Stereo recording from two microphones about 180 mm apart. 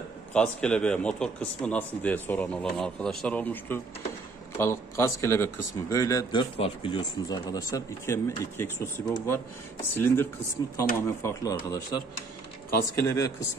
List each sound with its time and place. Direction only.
0.3 s speech: 5° left (ahead or behind)
6.6 s speech: 30° left (ahead or behind)